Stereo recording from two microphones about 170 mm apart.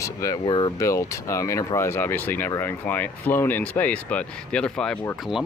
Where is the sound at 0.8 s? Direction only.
20° left (ahead or behind).